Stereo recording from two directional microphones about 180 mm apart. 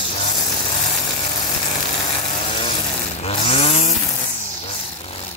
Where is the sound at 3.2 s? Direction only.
35° left (ahead or behind).